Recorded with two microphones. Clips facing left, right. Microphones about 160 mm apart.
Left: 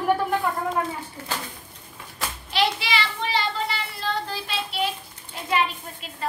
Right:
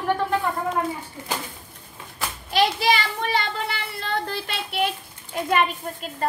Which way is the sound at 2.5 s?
45° right (ahead or behind).